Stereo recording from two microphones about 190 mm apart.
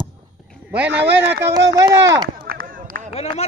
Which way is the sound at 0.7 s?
10° right (ahead or behind).